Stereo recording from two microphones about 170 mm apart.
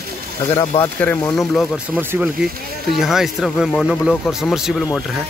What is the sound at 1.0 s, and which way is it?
Speech, 10° left (ahead or behind).